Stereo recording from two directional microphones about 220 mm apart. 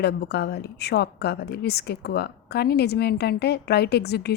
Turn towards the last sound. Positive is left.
turn(degrees=45)  # may be behind; listen again after turning